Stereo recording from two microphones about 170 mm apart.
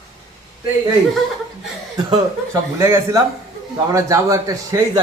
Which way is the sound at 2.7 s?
15° right (ahead or behind).